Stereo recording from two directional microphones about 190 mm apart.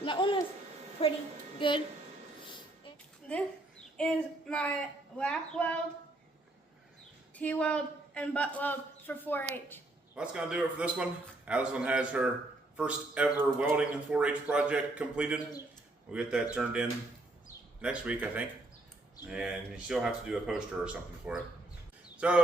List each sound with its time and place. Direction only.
0.0 s speech: 25° left (ahead or behind)
1.5 s speech: 25° left (ahead or behind)
3.3 s a man's voice: 5° left (ahead or behind)
7.3 s a man's voice: 5° left (ahead or behind)
10.2 s a man's voice: 5° right (ahead or behind)